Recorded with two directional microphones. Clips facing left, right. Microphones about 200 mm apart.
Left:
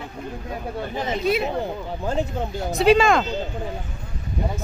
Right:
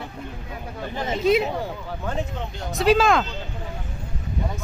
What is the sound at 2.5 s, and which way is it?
Speech, centre (ahead or behind).